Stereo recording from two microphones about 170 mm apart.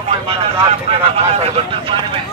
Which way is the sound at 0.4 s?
35° right (ahead or behind).